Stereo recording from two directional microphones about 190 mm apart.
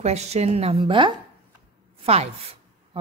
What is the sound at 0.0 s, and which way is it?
A woman's voice, 35° right (ahead or behind).